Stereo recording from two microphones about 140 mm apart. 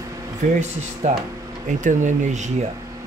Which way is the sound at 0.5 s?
60° right (ahead or behind).